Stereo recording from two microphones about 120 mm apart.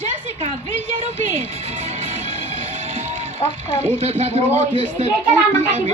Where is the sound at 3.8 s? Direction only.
60° right (ahead or behind).